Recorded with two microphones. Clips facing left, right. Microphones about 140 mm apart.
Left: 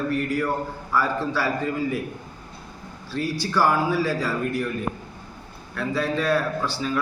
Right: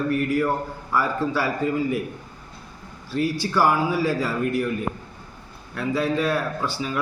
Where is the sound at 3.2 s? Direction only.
55° right (ahead or behind).